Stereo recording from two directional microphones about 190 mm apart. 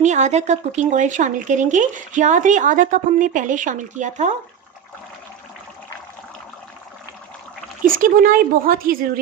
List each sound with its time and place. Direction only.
0.0 s speech: 40° right (ahead or behind)
7.9 s speech: 45° right (ahead or behind)